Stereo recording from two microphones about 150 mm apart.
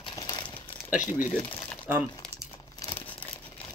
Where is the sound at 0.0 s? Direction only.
25° left (ahead or behind).